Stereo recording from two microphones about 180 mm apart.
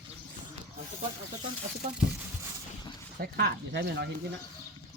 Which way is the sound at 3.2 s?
65° right (ahead or behind).